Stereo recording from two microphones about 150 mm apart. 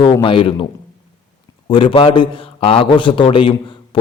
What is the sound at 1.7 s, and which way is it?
A man's voice, 35° left (ahead or behind).